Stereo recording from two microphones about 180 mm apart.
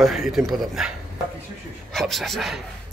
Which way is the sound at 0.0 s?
Centre (ahead or behind).